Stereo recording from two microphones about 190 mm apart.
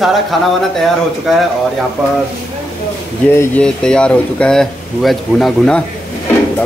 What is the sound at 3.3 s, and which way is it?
Speech, 10° left (ahead or behind).